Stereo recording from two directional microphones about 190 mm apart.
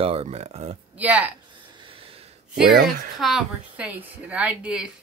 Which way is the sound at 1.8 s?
30° right (ahead or behind).